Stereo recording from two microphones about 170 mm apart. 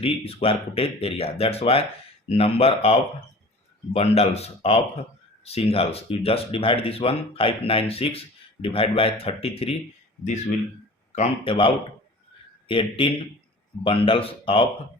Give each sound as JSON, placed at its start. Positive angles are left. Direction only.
{"t": 0.0, "sound": "speech", "side_deg": 35}
{"t": 11.4, "sound": "speech", "side_deg": 30}